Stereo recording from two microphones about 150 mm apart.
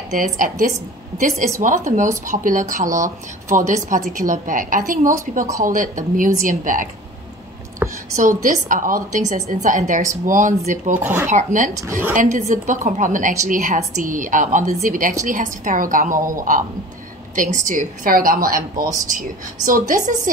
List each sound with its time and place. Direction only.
0.1 s a woman's voice: 60° right (ahead or behind)
7.8 s a sound: 15° right (ahead or behind)
8.2 s a woman's voice: 65° right (ahead or behind)
11.0 s speech: 10° right (ahead or behind)
11.2 s a woman's voice: 60° right (ahead or behind)